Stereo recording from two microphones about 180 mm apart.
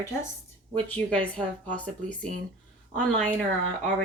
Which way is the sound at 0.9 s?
5° left (ahead or behind).